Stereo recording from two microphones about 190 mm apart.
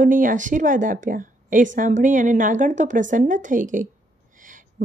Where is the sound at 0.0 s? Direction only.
45° right (ahead or behind).